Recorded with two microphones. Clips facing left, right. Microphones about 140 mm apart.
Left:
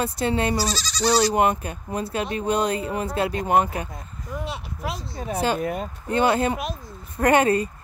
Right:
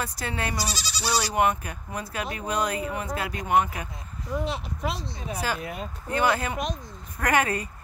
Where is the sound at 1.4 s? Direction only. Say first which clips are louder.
Left 3 dB; 30° left (ahead or behind).